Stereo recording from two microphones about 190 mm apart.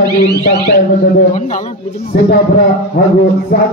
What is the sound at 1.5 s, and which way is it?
Speech, 35° left (ahead or behind).